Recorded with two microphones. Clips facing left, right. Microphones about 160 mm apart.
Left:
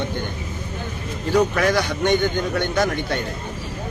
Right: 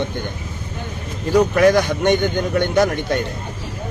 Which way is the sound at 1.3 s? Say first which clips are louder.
Right 5 dB; 50° right (ahead or behind).